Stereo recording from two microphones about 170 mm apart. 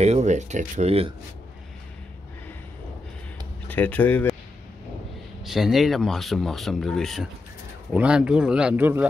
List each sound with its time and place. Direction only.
0.0 s speech: 40° right (ahead or behind)
3.6 s speech: 10° left (ahead or behind)
5.4 s speech: centre (ahead or behind)